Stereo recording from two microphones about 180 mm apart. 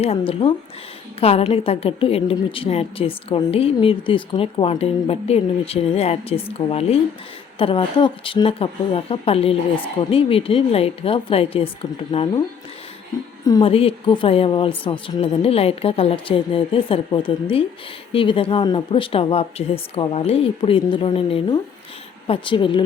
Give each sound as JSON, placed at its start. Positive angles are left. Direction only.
{"t": 0.0, "sound": "a woman's voice", "side_deg": 30}
{"t": 13.4, "sound": "a woman's voice", "side_deg": 20}
{"t": 13.7, "sound": "a woman's voice", "side_deg": 30}